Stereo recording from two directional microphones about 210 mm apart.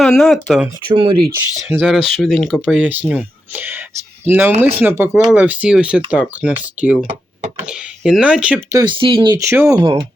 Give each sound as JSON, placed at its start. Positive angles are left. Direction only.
{"t": 0.0, "sound": "speech", "side_deg": 0}
{"t": 0.9, "sound": "speech", "side_deg": -20}
{"t": 1.4, "sound": "speech", "side_deg": -10}
{"t": 8.8, "sound": "speech", "side_deg": -25}